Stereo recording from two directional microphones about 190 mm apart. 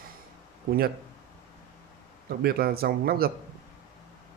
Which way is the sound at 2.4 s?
55° right (ahead or behind).